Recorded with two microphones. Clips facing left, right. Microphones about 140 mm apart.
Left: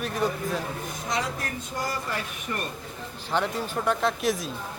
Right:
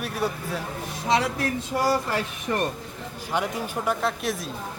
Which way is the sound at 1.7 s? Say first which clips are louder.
Right 7 dB; 85° right.